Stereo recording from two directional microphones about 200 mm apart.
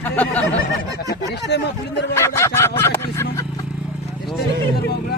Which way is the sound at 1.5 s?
60° left (ahead or behind).